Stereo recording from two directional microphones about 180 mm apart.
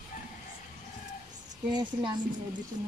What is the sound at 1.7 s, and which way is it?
Speech, 25° right (ahead or behind).